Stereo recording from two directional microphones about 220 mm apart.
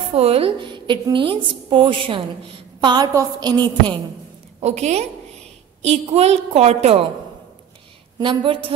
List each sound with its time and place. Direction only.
0.1 s a woman's voice: 25° right (ahead or behind)
4.6 s a woman's voice: 30° right (ahead or behind)
8.2 s a woman's voice: 20° right (ahead or behind)